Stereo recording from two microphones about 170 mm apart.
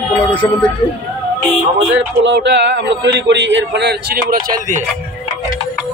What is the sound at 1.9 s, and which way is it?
A man's voice, 90° right.